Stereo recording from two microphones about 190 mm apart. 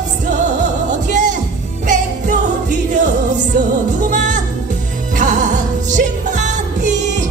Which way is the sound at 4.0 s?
40° right (ahead or behind).